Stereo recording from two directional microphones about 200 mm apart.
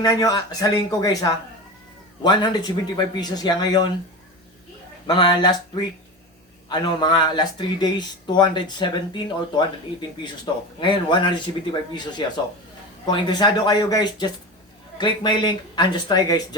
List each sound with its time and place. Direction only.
0.0 s speech: 20° left (ahead or behind)
5.0 s speech: 20° left (ahead or behind)
10.8 s speech: 25° left (ahead or behind)
13.1 s speech: 20° left (ahead or behind)